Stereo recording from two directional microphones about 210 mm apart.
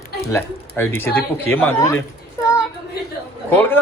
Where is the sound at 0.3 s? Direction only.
10° left (ahead or behind).